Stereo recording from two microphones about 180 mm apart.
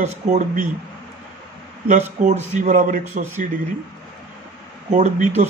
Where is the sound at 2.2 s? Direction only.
45° right (ahead or behind).